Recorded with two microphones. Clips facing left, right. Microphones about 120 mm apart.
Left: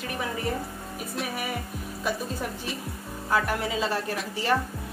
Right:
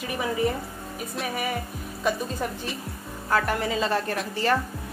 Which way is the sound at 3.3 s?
5° left (ahead or behind).